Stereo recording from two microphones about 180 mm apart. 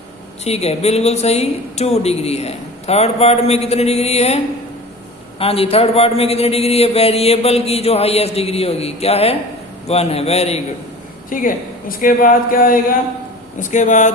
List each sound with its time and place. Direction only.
0.4 s a man's voice: 35° left (ahead or behind)
5.4 s a man's voice: 35° left (ahead or behind)
11.3 s speech: 50° left (ahead or behind)